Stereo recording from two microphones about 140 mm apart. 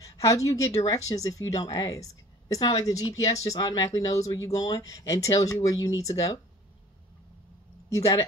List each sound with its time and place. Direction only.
0.0 s speech: 25° left (ahead or behind)
7.9 s speech: 20° left (ahead or behind)